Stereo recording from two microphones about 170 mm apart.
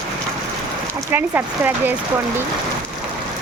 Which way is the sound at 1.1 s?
10° right (ahead or behind).